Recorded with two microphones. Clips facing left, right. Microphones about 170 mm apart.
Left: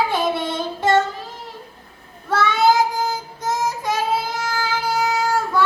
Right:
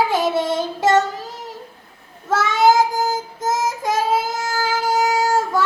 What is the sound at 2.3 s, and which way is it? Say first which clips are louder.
Child singing: right 1 dB; 45° right (ahead or behind).